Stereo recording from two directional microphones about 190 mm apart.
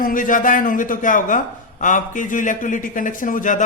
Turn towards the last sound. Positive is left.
turn(degrees=45)  # may be behind; listen again after turning